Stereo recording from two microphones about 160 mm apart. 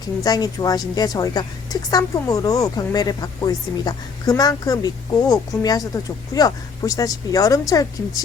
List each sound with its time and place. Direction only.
0.2 s a woman's voice: 20° left (ahead or behind)